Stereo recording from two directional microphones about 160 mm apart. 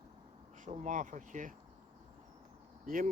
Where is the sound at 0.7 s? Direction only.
50° right (ahead or behind).